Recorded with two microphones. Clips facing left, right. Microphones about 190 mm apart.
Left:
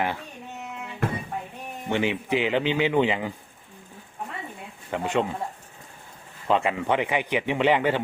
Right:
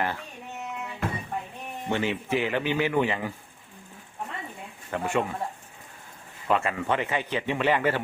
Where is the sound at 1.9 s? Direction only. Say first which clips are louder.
Left 2 dB; 15° left (ahead or behind).